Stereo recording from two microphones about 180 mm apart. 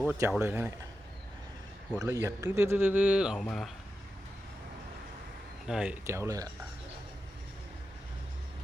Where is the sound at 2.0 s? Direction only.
20° right (ahead or behind); by 3.7 s 5° left (ahead or behind).